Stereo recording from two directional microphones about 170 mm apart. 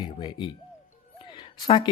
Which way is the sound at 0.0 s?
25° left (ahead or behind).